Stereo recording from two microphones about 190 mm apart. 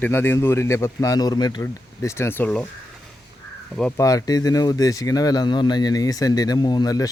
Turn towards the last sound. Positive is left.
turn(degrees=20)  # may be behind; listen again after turning